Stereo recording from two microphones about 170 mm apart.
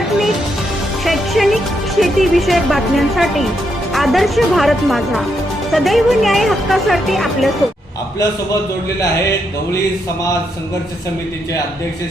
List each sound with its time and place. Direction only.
1.0 s music: centre (ahead or behind)
2.0 s speech: centre (ahead or behind)